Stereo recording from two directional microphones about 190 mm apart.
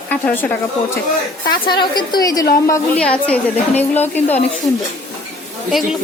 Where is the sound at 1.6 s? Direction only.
25° left (ahead or behind).